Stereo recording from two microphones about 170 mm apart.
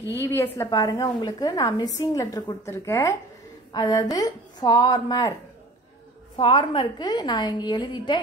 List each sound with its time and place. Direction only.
0.1 s a woman's voice: 15° left (ahead or behind)
6.3 s a woman's voice: 30° left (ahead or behind)